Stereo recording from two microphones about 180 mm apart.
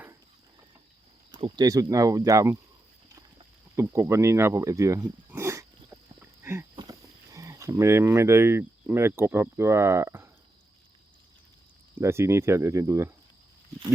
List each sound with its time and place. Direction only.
1.4 s speech: 25° right (ahead or behind)
3.8 s a sound: 15° right (ahead or behind)
7.3 s speech: 15° right (ahead or behind)
11.9 s speech: 15° right (ahead or behind)